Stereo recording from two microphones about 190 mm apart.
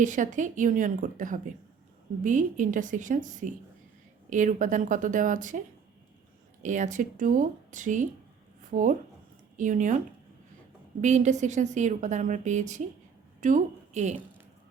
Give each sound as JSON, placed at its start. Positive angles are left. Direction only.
{"t": 0.0, "sound": "a woman's voice", "side_deg": -40}
{"t": 11.0, "sound": "a woman's voice", "side_deg": -40}